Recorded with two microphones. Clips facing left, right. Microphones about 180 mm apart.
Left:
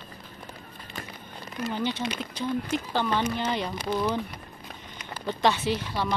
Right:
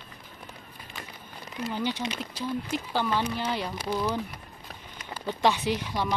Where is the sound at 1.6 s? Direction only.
10° right (ahead or behind).